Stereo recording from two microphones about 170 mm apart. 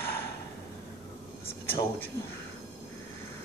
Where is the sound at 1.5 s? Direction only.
15° left (ahead or behind).